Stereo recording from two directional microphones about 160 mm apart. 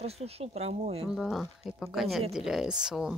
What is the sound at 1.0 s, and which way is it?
Speech, centre (ahead or behind).